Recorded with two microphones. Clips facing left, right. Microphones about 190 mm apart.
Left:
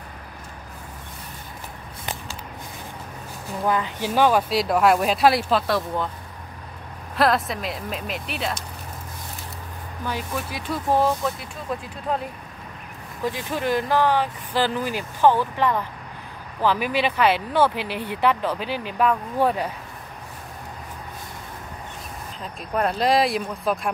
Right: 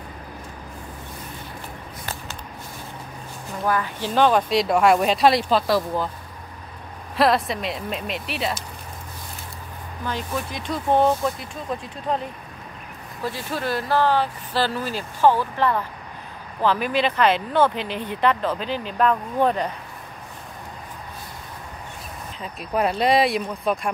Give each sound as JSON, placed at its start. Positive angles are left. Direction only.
{"t": 3.6, "sound": "speech", "side_deg": 20}
{"t": 7.2, "sound": "speech", "side_deg": 0}
{"t": 10.0, "sound": "speech", "side_deg": 10}
{"t": 13.2, "sound": "speech", "side_deg": 15}
{"t": 22.4, "sound": "speech", "side_deg": -5}